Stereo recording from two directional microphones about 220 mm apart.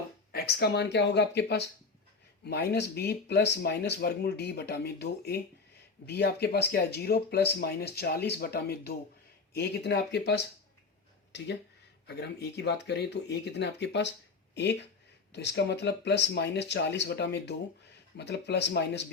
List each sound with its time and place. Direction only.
0.3 s speech: 45° left (ahead or behind)